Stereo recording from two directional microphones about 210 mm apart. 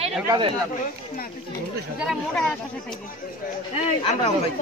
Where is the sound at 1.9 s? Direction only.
Centre (ahead or behind).